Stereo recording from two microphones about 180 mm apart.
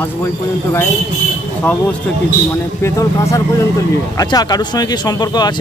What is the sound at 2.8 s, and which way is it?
Speech, 15° left (ahead or behind).